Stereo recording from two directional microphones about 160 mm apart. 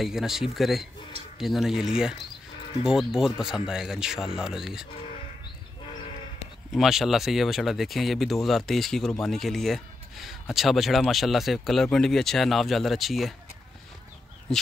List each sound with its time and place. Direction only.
0.0 s speech: 5° right (ahead or behind)
6.7 s speech: centre (ahead or behind)